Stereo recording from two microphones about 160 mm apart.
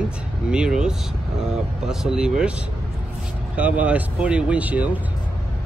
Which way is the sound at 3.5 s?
10° right (ahead or behind).